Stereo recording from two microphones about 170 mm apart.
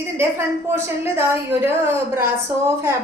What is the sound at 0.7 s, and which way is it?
A woman's voice, 15° right (ahead or behind).